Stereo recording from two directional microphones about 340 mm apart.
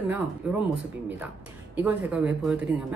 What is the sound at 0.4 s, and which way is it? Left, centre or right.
A woman's voice, centre.